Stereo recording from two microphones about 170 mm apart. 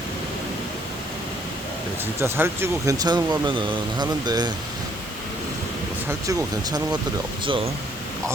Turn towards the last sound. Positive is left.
turn(degrees=-30)  # may be behind; listen again after turning